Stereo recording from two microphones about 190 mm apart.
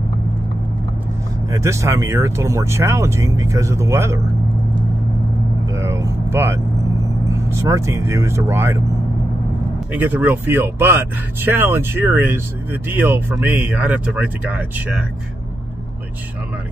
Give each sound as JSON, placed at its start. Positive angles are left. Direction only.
{"t": 1.5, "sound": "speech", "side_deg": -15}
{"t": 5.8, "sound": "vehicle", "side_deg": -15}
{"t": 7.2, "sound": "speech", "side_deg": -15}
{"t": 9.9, "sound": "speech", "side_deg": -10}